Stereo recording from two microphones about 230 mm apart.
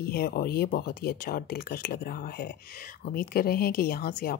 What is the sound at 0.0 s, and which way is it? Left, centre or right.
Speech, left.